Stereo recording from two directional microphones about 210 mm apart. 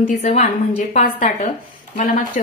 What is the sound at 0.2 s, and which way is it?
A woman's voice, 35° left (ahead or behind).